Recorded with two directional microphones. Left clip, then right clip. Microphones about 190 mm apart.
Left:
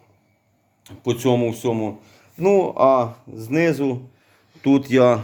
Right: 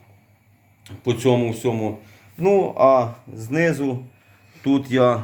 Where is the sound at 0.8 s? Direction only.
50° left (ahead or behind).